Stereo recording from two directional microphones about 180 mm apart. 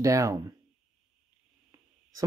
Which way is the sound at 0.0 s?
15° right (ahead or behind).